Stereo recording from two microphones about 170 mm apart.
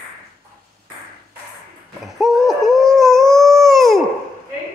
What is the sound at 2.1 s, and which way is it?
Howl, centre (ahead or behind).